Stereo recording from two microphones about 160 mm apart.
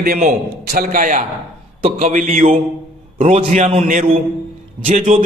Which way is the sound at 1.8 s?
45° right (ahead or behind).